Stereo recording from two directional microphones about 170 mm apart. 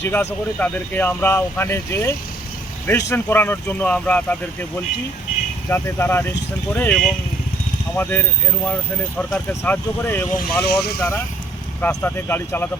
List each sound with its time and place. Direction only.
0.0 s speech: 15° left (ahead or behind)
5.6 s speech: 15° left (ahead or behind)
10.4 s speech: 70° left (ahead or behind)
11.8 s speech: 10° left (ahead or behind)